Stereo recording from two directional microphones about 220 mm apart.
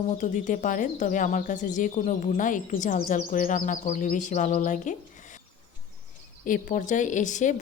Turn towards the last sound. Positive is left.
turn(degrees=35)  # may be behind; listen again after turning